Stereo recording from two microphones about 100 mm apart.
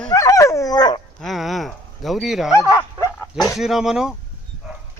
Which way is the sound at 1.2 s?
Centre (ahead or behind).